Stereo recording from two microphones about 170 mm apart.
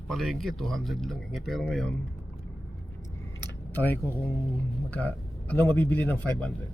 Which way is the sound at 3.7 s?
10° left (ahead or behind).